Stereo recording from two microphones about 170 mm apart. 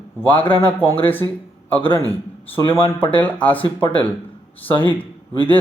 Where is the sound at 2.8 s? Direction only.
30° left (ahead or behind).